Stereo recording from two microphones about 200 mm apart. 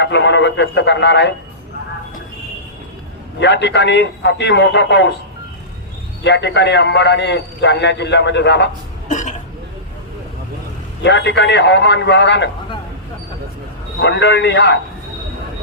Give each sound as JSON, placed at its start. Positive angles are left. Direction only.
{"t": 0.0, "sound": "a man's voice", "side_deg": 60}
{"t": 3.4, "sound": "a man's voice", "side_deg": 60}
{"t": 6.2, "sound": "a man's voice", "side_deg": 60}
{"t": 9.0, "sound": "throat clearing", "side_deg": 40}
{"t": 11.0, "sound": "a man's voice", "side_deg": 60}
{"t": 14.0, "sound": "a man's voice", "side_deg": 60}